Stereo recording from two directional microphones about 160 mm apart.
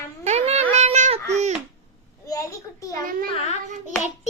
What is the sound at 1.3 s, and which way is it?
Babbling, 45° right (ahead or behind).